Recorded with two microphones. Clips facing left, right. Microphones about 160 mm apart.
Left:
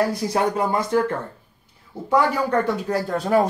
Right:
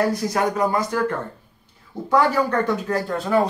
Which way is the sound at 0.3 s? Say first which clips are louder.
Even; 25° left (ahead or behind).